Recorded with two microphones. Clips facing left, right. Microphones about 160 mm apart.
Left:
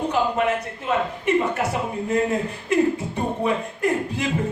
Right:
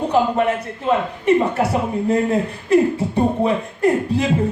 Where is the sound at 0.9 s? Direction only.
35° right (ahead or behind).